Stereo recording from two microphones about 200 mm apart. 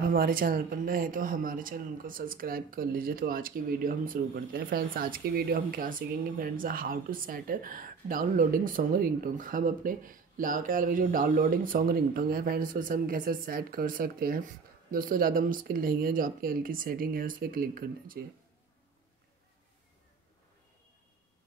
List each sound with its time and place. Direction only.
0.0 s speech: 45° right (ahead or behind)